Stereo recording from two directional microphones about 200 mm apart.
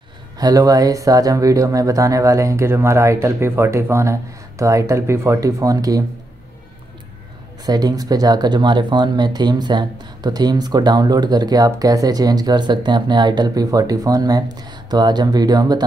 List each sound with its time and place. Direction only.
0.4 s speech: 20° right (ahead or behind)
7.6 s speech: 20° right (ahead or behind)